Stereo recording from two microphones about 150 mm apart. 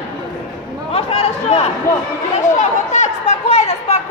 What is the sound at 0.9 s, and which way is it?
A man's voice, 40° left (ahead or behind).